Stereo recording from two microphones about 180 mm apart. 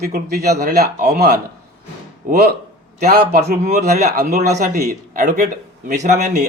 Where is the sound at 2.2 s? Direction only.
50° right (ahead or behind).